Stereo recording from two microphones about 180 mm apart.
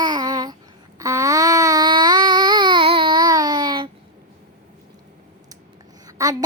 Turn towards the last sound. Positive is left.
turn(degrees=-20)  # may be behind; listen again after turning